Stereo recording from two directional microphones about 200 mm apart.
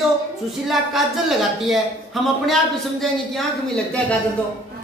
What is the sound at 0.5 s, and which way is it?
Speech, centre (ahead or behind).